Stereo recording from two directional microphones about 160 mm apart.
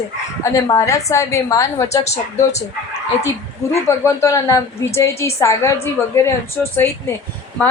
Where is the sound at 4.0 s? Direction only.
15° left (ahead or behind).